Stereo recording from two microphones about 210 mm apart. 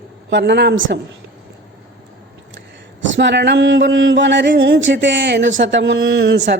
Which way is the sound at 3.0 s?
60° right (ahead or behind).